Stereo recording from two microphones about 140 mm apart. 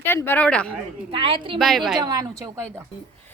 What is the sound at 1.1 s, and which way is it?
Speech, 40° right (ahead or behind).